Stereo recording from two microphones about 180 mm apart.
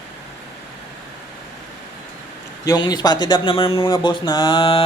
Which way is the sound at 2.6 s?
25° left (ahead or behind).